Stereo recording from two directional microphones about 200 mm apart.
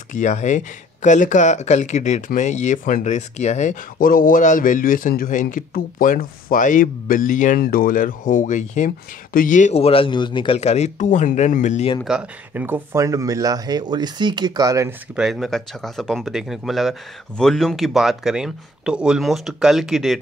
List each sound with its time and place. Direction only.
0.1 s speech: 35° left (ahead or behind)
12.0 s speech: 5° right (ahead or behind)
15.1 s speech: centre (ahead or behind)